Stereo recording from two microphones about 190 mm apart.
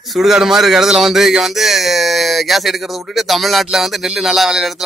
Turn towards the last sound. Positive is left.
turn(degrees=0)  # may be behind; listen again after turning